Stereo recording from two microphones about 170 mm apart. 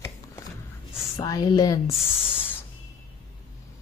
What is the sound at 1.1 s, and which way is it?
Speech, 20° left (ahead or behind).